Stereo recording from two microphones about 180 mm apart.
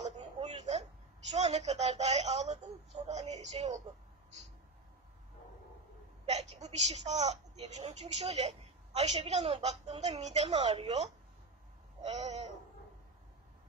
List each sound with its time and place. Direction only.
0.4 s a sound: 35° right (ahead or behind)
1.3 s a woman's voice: 40° right (ahead or behind)
6.2 s a woman's voice: 40° right (ahead or behind)